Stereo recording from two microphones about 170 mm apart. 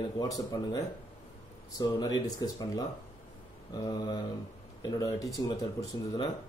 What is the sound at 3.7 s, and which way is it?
Speech, 25° left (ahead or behind).